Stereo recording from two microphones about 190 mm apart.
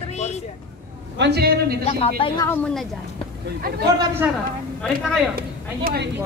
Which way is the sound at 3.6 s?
55° right (ahead or behind).